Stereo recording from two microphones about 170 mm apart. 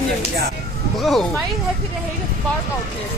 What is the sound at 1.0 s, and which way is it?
Speech, centre (ahead or behind).